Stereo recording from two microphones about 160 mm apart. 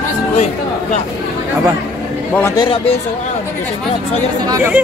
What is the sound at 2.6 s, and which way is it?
Speech, 35° left (ahead or behind).